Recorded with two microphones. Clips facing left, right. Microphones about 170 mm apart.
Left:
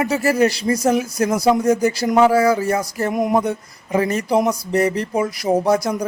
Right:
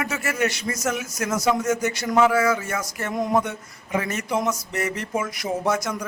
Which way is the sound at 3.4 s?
35° left (ahead or behind).